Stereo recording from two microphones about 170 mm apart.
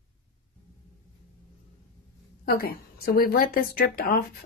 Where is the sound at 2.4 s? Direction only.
60° left (ahead or behind).